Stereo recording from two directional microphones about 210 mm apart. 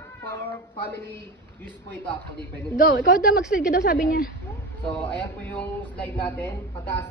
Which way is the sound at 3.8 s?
40° left (ahead or behind).